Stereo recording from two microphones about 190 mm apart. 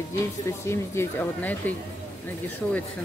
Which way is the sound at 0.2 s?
15° left (ahead or behind).